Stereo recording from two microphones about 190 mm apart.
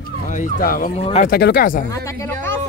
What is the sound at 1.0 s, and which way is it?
Speech, 30° left (ahead or behind).